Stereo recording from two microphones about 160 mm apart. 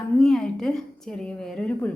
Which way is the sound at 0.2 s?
5° left (ahead or behind).